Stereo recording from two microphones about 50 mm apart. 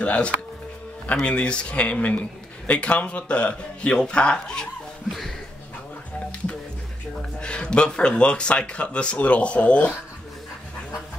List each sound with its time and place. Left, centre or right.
0.0 s speech: left
7.2 s speech: centre